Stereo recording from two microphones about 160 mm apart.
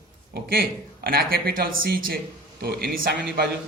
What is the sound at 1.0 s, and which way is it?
A man's voice, 65° right (ahead or behind).